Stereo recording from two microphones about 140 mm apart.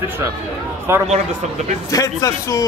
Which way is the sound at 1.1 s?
55° right (ahead or behind).